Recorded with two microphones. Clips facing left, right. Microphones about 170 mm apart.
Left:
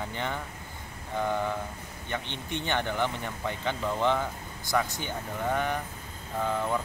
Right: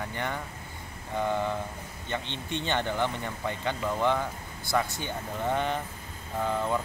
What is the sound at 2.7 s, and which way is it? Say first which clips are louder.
Speech: even; 15° right (ahead or behind).